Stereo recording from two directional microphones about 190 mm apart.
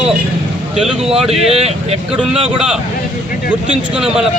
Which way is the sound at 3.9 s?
5° right (ahead or behind).